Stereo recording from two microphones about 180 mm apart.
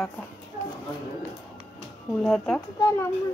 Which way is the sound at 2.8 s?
15° left (ahead or behind).